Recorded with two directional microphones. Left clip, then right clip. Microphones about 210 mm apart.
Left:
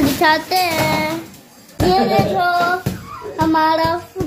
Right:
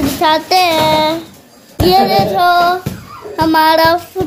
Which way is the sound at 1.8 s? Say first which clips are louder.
Right 5 dB; 50° right (ahead or behind).